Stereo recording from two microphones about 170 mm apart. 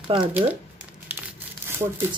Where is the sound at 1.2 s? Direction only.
15° right (ahead or behind).